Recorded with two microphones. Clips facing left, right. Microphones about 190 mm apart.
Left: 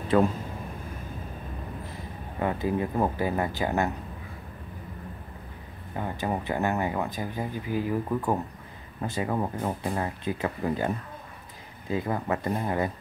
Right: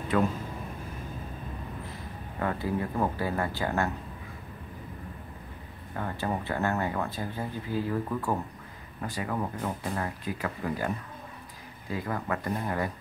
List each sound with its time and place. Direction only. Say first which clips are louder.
0.1 s speech: left 4 dB; 30° left (ahead or behind)
2.4 s speech: left 3 dB; 20° left (ahead or behind)
5.9 s speech: left 2 dB; 15° left (ahead or behind)
11.9 s speech: left 4 dB; 25° left (ahead or behind)